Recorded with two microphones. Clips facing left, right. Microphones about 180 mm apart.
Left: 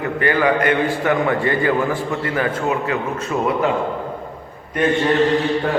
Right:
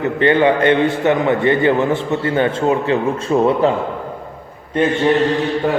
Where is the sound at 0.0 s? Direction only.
25° right (ahead or behind).